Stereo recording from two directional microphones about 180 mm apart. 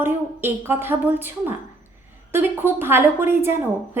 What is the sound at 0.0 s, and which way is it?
A woman's voice, 15° right (ahead or behind).